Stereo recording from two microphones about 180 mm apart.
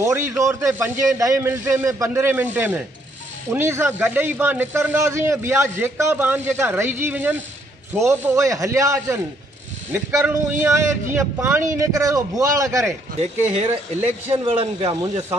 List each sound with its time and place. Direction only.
0.0 s speech: 15° right (ahead or behind)
13.2 s speech: 35° right (ahead or behind)